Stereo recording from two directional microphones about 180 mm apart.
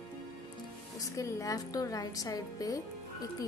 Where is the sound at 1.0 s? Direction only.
20° left (ahead or behind).